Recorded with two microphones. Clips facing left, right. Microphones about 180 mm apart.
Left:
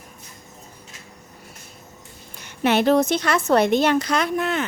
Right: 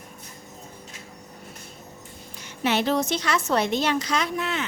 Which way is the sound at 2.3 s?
55° left (ahead or behind).